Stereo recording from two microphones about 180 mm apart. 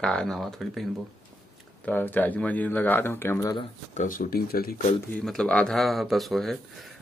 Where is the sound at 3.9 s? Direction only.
50° left (ahead or behind).